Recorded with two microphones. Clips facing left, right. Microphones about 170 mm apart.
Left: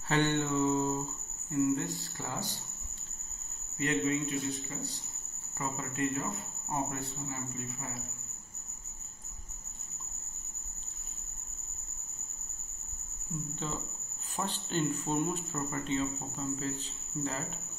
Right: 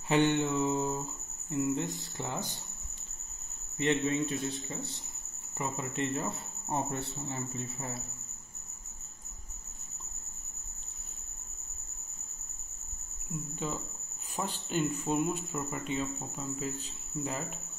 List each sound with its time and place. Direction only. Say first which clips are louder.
0.1 s speech: right 2 dB; 20° right (ahead or behind)
3.7 s speech: right 1 dB; 25° right (ahead or behind)
14.3 s speech: right 1 dB; 10° right (ahead or behind)